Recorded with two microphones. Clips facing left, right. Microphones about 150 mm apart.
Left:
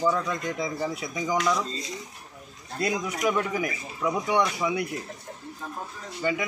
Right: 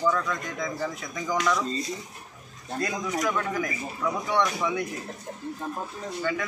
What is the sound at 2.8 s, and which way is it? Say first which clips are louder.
A man's voice: left 2 dB; 15° left (ahead or behind).